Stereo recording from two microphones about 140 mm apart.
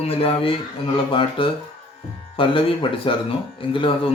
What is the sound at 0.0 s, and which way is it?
Speech, 45° left (ahead or behind).